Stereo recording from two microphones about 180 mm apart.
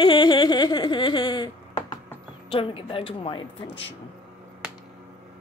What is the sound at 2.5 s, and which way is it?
Speech, 30° left (ahead or behind).